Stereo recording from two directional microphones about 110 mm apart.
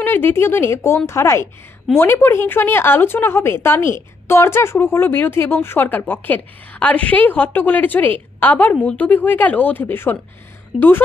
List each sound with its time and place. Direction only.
0.0 s speech: 20° left (ahead or behind)